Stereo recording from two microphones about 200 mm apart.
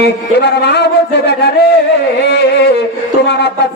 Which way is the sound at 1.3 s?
55° left (ahead or behind).